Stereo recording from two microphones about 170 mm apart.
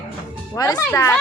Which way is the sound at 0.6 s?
20° left (ahead or behind).